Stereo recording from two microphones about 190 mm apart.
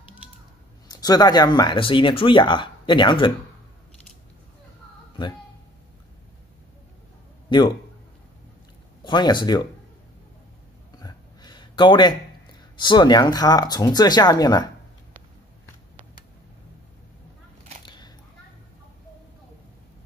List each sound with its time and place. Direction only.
0.8 s speech: 20° left (ahead or behind)
5.2 s speech: 25° left (ahead or behind)
7.4 s a man's voice: 25° left (ahead or behind)
9.0 s speech: 25° left (ahead or behind)
11.0 s a sound: 20° left (ahead or behind)
12.7 s speech: 25° left (ahead or behind)
17.8 s children playing: 25° left (ahead or behind)